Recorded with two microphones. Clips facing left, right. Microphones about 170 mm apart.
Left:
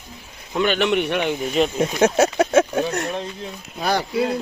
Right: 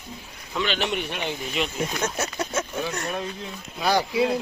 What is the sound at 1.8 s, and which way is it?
Speech, 80° left.